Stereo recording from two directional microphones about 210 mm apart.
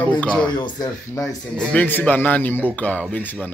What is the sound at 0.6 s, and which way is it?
Speech, 20° left (ahead or behind).